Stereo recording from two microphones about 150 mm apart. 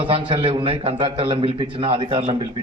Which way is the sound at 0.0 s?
35° right (ahead or behind).